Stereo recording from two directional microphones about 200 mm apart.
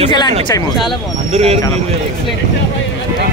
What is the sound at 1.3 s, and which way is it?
Speech, 30° right (ahead or behind).